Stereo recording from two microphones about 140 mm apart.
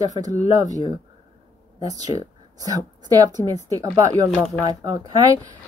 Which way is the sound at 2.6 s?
25° right (ahead or behind).